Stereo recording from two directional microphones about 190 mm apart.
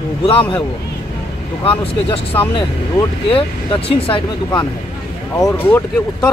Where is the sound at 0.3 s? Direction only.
25° left (ahead or behind).